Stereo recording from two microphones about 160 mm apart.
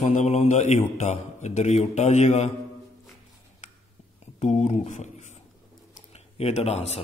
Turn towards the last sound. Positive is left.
turn(degrees=40)  # may be behind; listen again after turning